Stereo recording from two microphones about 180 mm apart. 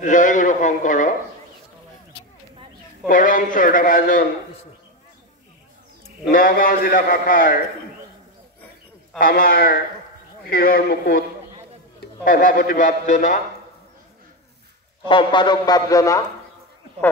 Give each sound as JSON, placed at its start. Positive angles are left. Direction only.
{"t": 0.0, "sound": "a sound", "side_deg": 45}
{"t": 3.1, "sound": "a man's voice", "side_deg": 50}
{"t": 6.3, "sound": "a man's voice", "side_deg": 50}
{"t": 9.2, "sound": "a man's voice", "side_deg": 50}
{"t": 15.0, "sound": "speech", "side_deg": 25}